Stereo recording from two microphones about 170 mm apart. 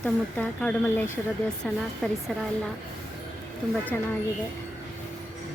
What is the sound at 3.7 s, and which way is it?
Speech, 10° left (ahead or behind).